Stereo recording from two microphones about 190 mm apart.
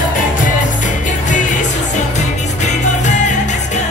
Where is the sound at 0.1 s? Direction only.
40° left (ahead or behind).